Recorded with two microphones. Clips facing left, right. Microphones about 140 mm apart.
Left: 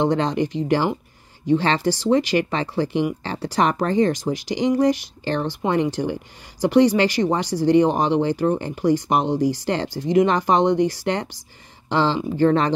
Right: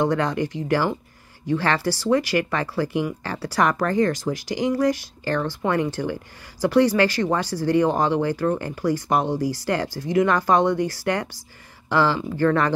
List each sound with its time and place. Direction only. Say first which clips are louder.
0.0 s speech: left 2 dB; 20° left (ahead or behind)